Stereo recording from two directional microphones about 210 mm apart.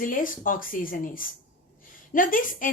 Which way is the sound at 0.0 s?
40° left (ahead or behind).